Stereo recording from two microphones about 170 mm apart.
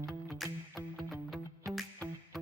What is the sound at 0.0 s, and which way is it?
Music, centre (ahead or behind).